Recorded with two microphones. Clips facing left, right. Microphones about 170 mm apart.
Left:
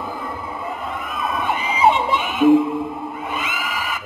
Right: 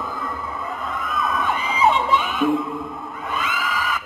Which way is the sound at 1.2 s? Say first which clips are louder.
Left 2 dB; 10° left (ahead or behind).